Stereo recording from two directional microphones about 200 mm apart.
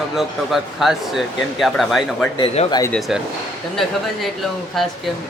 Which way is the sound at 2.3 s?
30° left (ahead or behind).